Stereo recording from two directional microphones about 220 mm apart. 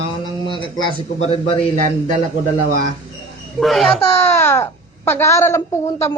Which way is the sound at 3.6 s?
Centre (ahead or behind).